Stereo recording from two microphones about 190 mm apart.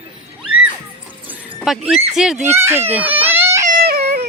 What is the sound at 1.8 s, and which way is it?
Speech, 30° right (ahead or behind).